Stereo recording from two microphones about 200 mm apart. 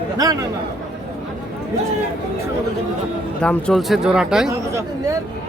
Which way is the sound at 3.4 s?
5° left (ahead or behind).